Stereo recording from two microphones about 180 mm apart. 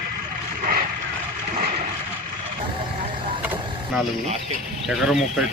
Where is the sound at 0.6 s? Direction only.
55° right (ahead or behind).